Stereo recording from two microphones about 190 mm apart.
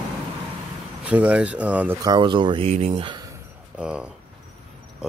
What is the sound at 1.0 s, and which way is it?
Speech, 5° right (ahead or behind).